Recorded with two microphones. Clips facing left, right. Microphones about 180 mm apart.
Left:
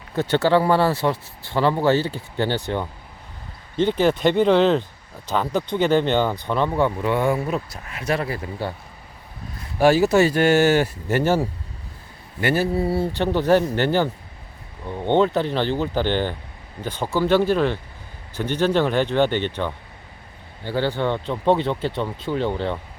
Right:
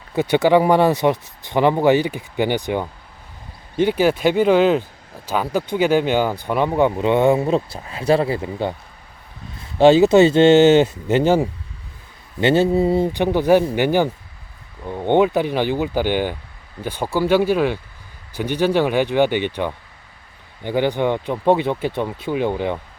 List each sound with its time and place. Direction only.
0.1 s speech: 15° right (ahead or behind)
6.7 s speech: 20° right (ahead or behind)
9.7 s speech: 20° right (ahead or behind)